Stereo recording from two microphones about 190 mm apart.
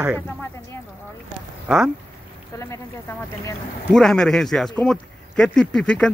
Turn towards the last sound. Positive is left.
turn(degrees=5)  # may be behind; listen again after turning